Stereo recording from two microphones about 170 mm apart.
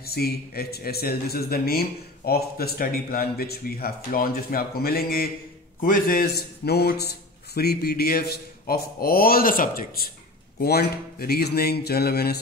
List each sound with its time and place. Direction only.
0.0 s a man's voice: 65° left (ahead or behind)